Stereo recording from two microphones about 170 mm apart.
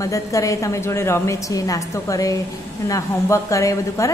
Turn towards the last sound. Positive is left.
turn(degrees=20)  # may be behind; listen again after turning